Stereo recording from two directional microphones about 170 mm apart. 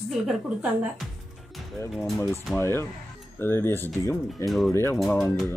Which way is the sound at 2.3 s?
15° left (ahead or behind).